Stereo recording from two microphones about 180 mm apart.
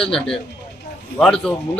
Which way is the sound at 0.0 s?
5° left (ahead or behind).